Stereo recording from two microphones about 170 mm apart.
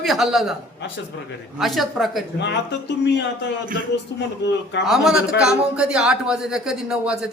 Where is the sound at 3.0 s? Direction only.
90° left.